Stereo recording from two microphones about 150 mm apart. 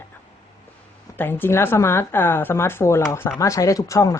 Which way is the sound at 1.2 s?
15° left (ahead or behind).